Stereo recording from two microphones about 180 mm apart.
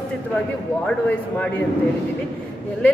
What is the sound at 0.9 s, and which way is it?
Speech, 5° left (ahead or behind).